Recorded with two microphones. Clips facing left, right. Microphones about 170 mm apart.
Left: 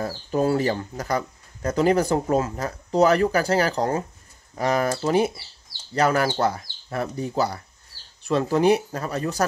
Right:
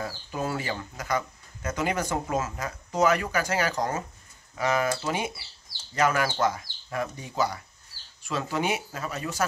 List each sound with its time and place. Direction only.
0.0 s speech: 35° left (ahead or behind)